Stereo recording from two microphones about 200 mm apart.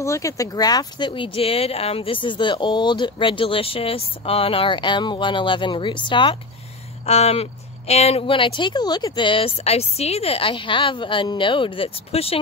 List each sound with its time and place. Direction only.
0.0 s speech: 15° left (ahead or behind)